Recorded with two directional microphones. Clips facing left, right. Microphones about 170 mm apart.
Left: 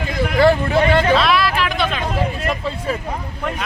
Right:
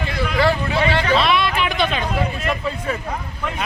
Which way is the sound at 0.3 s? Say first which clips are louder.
Left 5 dB; 50° left (ahead or behind).